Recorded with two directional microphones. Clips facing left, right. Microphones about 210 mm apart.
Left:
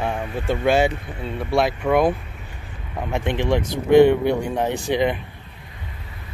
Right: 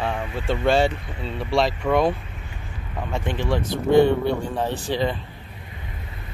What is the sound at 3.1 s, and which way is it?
Speech, 20° left (ahead or behind).